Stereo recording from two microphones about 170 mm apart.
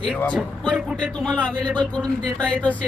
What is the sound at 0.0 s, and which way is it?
Speech, 5° left (ahead or behind).